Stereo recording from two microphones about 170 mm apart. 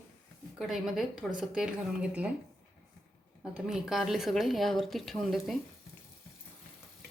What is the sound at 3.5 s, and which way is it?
A woman's voice, centre (ahead or behind).